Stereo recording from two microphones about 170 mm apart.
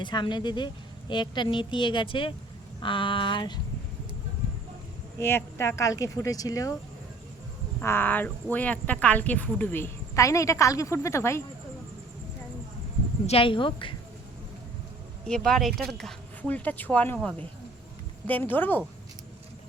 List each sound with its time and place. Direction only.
0.0 s speech: 25° left (ahead or behind)
5.1 s speech: 15° left (ahead or behind)
7.8 s a woman's voice: 15° left (ahead or behind)
13.2 s speech: 35° left (ahead or behind)
15.3 s a woman's voice: centre (ahead or behind)